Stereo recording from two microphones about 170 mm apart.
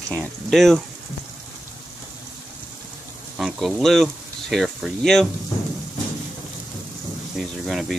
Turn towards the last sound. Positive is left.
turn(degrees=0)  # may be behind; listen again after turning